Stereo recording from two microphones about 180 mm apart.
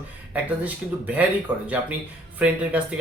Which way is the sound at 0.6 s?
10° right (ahead or behind).